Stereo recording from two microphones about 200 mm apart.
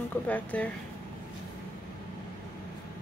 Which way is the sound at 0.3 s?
5° left (ahead or behind).